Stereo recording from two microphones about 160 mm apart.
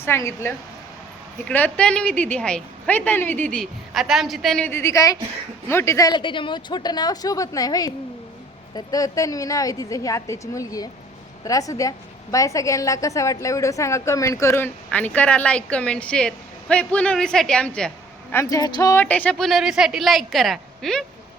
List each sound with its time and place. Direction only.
0.0 s a woman's voice: 15° left (ahead or behind)
18.4 s a woman's voice: 25° left (ahead or behind)
19.0 s speech: 10° left (ahead or behind)